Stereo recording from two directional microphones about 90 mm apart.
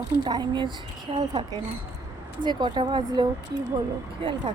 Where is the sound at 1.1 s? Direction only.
70° right (ahead or behind).